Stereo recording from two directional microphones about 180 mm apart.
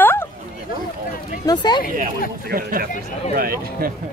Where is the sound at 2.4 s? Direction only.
55° right (ahead or behind).